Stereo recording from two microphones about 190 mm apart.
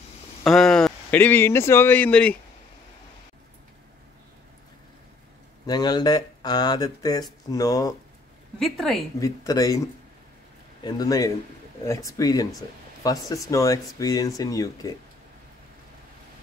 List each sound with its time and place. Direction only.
0.4 s a man's voice: centre (ahead or behind)
5.7 s speech: 20° left (ahead or behind)
8.5 s a woman's voice: centre (ahead or behind)
9.2 s speech: 20° left (ahead or behind)